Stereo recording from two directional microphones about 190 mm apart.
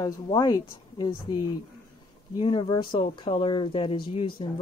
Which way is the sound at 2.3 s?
25° left (ahead or behind).